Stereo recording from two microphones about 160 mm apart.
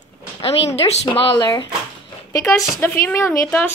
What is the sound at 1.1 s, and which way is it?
A woman's voice, 30° left (ahead or behind).